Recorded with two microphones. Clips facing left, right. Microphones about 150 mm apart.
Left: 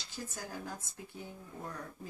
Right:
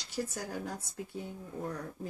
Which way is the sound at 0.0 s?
70° right (ahead or behind).